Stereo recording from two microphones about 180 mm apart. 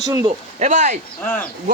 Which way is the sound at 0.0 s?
20° right (ahead or behind).